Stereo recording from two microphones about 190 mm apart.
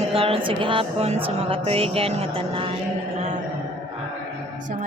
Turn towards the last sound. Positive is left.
turn(degrees=-35)  # may be behind; listen again after turning